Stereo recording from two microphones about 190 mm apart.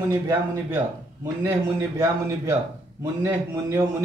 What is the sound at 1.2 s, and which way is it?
Speech, 15° right (ahead or behind).